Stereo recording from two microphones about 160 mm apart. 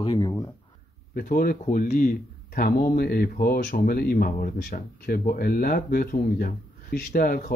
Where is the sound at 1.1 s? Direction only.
65° left (ahead or behind).